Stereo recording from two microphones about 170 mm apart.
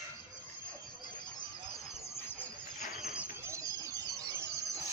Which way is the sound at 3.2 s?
15° right (ahead or behind).